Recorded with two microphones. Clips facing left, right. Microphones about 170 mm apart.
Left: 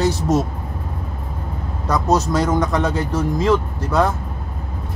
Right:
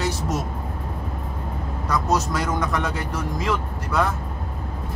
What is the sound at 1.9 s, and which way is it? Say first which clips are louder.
Speech: left 5 dB; 20° left (ahead or behind).